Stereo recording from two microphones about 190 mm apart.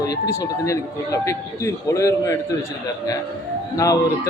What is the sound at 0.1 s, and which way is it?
Speech, 15° left (ahead or behind).